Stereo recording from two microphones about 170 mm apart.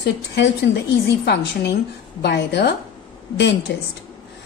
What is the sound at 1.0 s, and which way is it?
A woman's voice, 75° left (ahead or behind).